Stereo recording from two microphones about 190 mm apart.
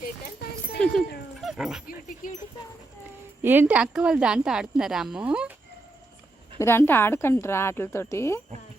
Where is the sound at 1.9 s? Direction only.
45° left (ahead or behind).